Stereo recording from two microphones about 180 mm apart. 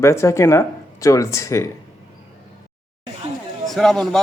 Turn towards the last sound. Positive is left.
turn(degrees=0)  # may be behind; listen again after turning